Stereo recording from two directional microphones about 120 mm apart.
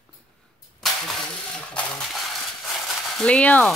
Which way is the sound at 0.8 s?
Centre (ahead or behind).